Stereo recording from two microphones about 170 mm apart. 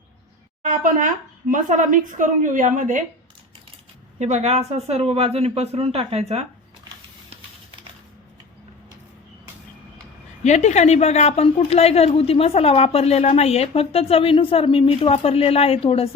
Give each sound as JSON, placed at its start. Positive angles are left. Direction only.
{"t": 0.6, "sound": "speech", "side_deg": -50}
{"t": 4.2, "sound": "speech", "side_deg": -40}
{"t": 10.4, "sound": "a woman's voice", "side_deg": 45}